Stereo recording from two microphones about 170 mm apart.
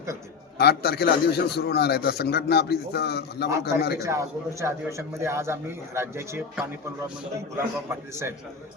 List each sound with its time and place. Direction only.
0.6 s a man's voice: 70° left (ahead or behind)
3.9 s a man's voice: 15° right (ahead or behind)